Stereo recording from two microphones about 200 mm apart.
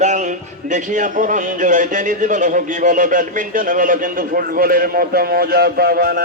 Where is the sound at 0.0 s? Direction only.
35° right (ahead or behind).